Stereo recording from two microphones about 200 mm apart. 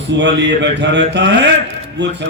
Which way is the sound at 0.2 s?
60° right (ahead or behind).